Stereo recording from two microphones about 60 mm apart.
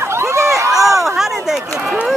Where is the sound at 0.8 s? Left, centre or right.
Centre.